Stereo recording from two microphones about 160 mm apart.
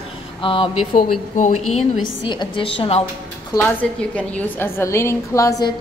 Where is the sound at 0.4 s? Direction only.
35° left (ahead or behind).